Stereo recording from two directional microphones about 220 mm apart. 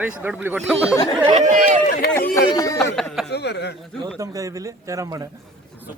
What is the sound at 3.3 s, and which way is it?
Speech, 50° left (ahead or behind).